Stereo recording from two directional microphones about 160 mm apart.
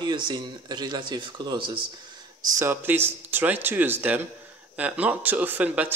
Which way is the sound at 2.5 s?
15° right (ahead or behind).